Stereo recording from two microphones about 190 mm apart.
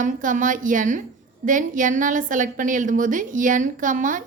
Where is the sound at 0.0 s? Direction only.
45° right (ahead or behind).